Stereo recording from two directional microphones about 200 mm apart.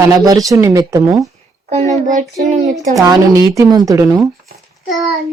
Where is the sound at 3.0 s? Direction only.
15° right (ahead or behind).